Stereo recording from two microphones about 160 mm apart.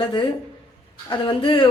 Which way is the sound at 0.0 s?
25° left (ahead or behind).